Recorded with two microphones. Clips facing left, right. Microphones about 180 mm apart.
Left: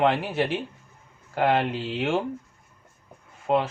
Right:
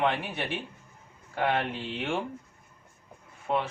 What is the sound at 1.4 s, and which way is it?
Speech, 90° left.